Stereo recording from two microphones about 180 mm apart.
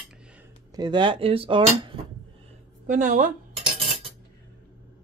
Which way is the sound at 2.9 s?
45° right (ahead or behind).